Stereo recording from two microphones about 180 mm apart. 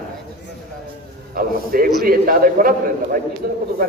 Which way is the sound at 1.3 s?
55° right (ahead or behind).